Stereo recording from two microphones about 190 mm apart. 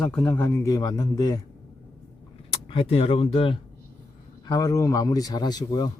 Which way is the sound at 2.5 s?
25° left (ahead or behind).